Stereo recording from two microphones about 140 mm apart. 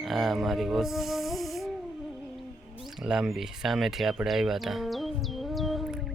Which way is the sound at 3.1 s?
5° right (ahead or behind).